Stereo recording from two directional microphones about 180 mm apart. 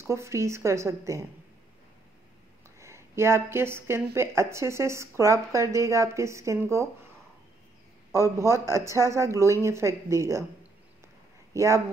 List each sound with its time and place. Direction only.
0.0 s speech: 15° right (ahead or behind)
2.8 s speech: 15° right (ahead or behind)
8.2 s speech: 15° right (ahead or behind)
11.5 s speech: 15° right (ahead or behind)